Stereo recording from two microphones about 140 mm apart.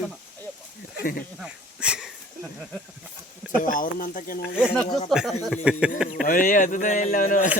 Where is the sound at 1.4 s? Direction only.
5° right (ahead or behind).